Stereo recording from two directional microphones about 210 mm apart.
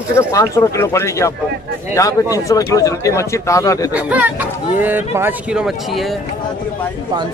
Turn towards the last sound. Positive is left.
turn(degrees=0)  # may be behind; listen again after turning